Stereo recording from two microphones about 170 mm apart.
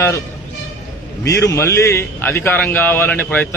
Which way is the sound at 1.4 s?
15° left (ahead or behind).